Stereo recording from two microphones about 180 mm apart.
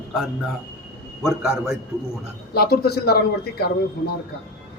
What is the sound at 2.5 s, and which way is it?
A man's voice, 60° left (ahead or behind).